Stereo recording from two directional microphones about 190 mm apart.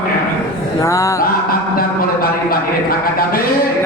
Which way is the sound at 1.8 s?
50° left (ahead or behind).